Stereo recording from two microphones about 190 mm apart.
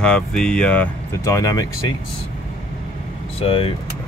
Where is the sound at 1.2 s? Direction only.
20° left (ahead or behind).